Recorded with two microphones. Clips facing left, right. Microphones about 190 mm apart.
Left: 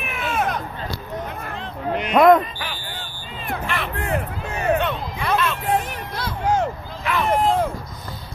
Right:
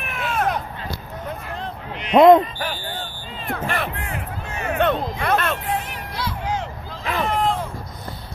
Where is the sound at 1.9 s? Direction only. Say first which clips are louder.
Left 9 dB; 50° left (ahead or behind).